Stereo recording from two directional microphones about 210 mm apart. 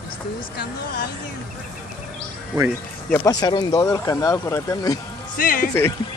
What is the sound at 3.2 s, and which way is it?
Speech, 20° left (ahead or behind).